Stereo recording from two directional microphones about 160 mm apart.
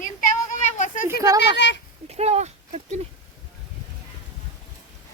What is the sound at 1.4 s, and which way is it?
Speech, 90° left.